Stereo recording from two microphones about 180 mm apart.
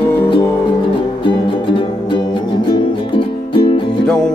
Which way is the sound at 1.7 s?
25° left (ahead or behind).